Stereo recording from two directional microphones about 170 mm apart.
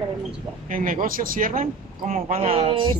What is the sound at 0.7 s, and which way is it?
Speech, 50° right (ahead or behind).